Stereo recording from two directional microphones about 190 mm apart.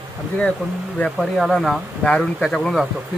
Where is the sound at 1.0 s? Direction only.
Centre (ahead or behind).